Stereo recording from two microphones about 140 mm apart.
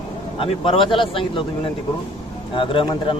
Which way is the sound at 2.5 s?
35° left (ahead or behind).